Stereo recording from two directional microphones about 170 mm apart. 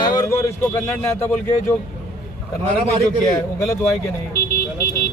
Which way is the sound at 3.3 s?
20° left (ahead or behind).